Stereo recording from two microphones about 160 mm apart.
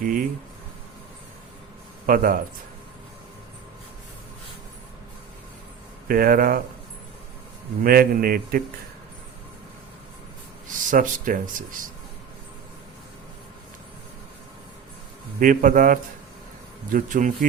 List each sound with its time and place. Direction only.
0.0 s a sound: 60° right (ahead or behind)
2.0 s speech: 60° right (ahead or behind)
6.1 s speech: 65° right (ahead or behind)
7.9 s speech: 65° right (ahead or behind)
10.7 s speech: 55° right (ahead or behind)
15.4 s speech: 60° right (ahead or behind)